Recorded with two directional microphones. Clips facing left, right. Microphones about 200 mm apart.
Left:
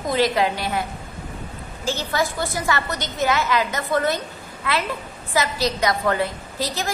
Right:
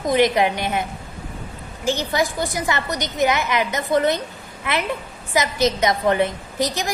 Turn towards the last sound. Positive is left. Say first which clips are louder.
# right 3 dB
turn(degrees=-20)  # may be behind; listen again after turning